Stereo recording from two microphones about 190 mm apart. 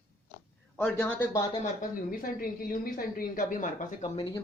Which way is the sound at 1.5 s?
40° left (ahead or behind).